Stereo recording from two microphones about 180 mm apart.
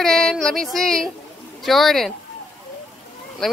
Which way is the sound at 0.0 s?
5° left (ahead or behind).